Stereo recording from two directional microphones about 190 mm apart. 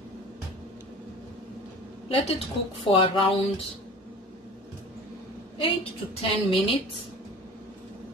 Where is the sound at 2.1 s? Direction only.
30° left (ahead or behind).